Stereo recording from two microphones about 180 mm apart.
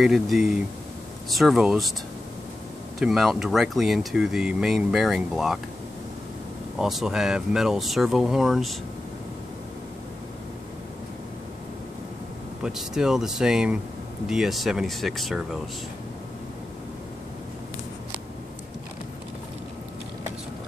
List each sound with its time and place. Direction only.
0.0 s speech: centre (ahead or behind)
3.0 s speech: centre (ahead or behind)
6.8 s speech: centre (ahead or behind)
12.6 s speech: 5° right (ahead or behind)